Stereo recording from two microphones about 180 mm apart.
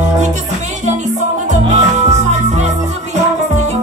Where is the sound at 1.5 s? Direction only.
40° right (ahead or behind).